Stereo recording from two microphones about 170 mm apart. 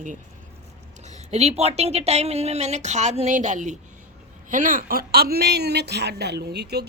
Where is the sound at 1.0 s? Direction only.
40° right (ahead or behind).